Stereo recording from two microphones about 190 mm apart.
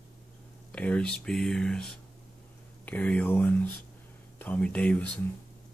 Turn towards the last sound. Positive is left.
turn(degrees=5)  # may be behind; listen again after turning